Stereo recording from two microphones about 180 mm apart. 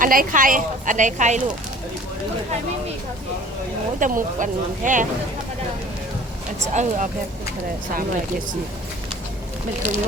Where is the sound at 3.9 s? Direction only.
45° right (ahead or behind).